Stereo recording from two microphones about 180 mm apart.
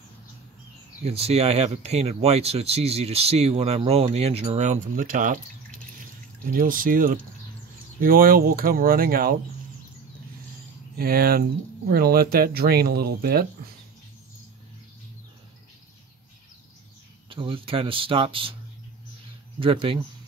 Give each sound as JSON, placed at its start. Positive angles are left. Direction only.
{"t": 1.0, "sound": "speech", "side_deg": -35}
{"t": 6.5, "sound": "speech", "side_deg": -50}
{"t": 11.0, "sound": "speech", "side_deg": -55}
{"t": 17.3, "sound": "speech", "side_deg": -30}
{"t": 19.6, "sound": "speech", "side_deg": -30}